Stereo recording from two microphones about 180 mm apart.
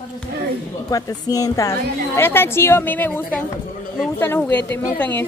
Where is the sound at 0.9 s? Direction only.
20° left (ahead or behind).